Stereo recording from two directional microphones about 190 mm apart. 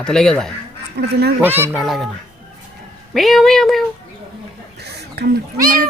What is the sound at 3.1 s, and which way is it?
Speech, centre (ahead or behind).